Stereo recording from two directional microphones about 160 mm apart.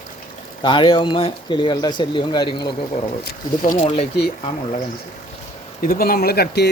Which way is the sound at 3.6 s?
50° left (ahead or behind).